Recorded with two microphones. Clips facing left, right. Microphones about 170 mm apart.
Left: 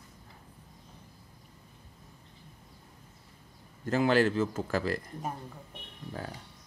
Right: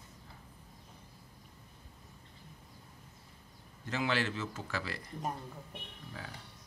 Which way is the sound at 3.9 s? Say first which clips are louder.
Left 9 dB; 45° left (ahead or behind).